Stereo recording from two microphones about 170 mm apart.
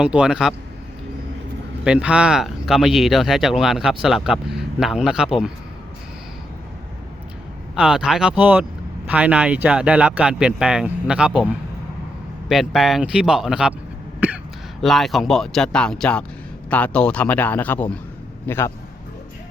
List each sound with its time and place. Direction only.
0.0 s speech: 5° right (ahead or behind)
1.8 s speech: 5° right (ahead or behind)
7.8 s speech: 5° right (ahead or behind)
12.5 s speech: centre (ahead or behind)
14.8 s a man's voice: centre (ahead or behind)